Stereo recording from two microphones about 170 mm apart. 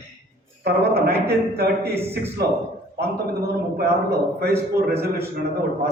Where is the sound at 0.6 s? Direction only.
70° right (ahead or behind).